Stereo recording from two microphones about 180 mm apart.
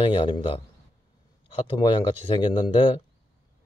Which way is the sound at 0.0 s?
25° left (ahead or behind).